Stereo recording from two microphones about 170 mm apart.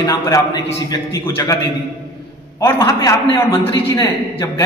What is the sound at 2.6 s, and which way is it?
Speech, 20° left (ahead or behind).